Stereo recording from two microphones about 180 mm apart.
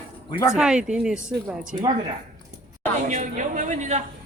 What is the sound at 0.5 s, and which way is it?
Speech, 5° right (ahead or behind).